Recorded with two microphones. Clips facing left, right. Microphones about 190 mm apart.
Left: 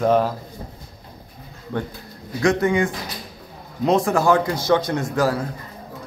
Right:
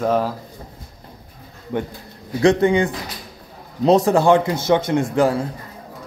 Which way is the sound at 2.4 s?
30° right (ahead or behind).